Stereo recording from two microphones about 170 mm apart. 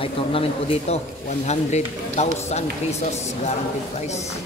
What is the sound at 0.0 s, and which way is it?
Speech, 35° left (ahead or behind).